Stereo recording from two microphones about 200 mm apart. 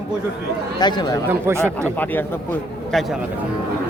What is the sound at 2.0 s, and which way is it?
A man's voice, 10° left (ahead or behind).